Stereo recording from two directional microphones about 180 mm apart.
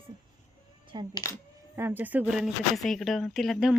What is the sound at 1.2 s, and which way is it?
Speech, 15° left (ahead or behind).